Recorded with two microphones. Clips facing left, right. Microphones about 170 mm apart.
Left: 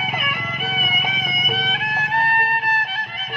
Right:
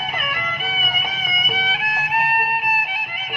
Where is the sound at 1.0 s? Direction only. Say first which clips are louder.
Left 2 dB; centre (ahead or behind).